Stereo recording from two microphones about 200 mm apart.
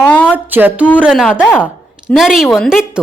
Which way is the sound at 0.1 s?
5° left (ahead or behind).